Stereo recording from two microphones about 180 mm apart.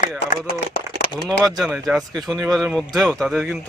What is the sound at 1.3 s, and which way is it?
Speech, 5° left (ahead or behind).